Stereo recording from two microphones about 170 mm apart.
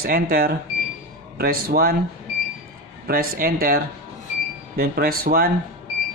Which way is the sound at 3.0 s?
60° right (ahead or behind).